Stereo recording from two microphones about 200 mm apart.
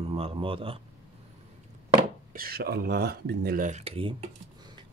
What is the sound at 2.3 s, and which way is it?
Speech, 50° right (ahead or behind).